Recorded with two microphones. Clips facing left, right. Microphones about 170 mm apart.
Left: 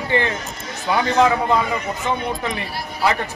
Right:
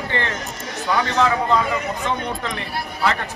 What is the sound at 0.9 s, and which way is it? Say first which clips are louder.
Speech: left 3 dB; 10° left (ahead or behind).